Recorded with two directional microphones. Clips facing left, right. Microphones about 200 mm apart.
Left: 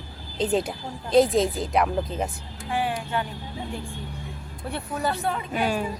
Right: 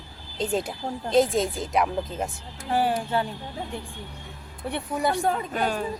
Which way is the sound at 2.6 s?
40° right (ahead or behind).